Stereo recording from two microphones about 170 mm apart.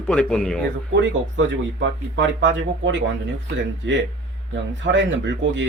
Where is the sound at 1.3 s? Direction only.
90° right.